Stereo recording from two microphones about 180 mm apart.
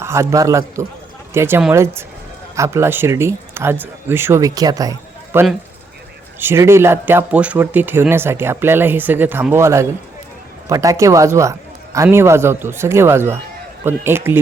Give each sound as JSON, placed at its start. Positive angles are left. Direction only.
{"t": 0.0, "sound": "speech", "side_deg": -15}